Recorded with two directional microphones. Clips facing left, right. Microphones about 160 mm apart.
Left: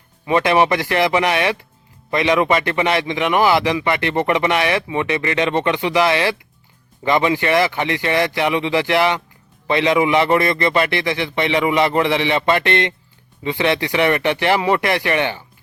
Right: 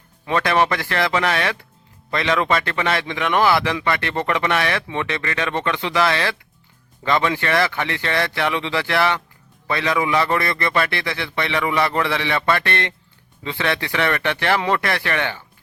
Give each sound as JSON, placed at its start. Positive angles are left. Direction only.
{"t": 0.3, "sound": "a man's voice", "side_deg": 15}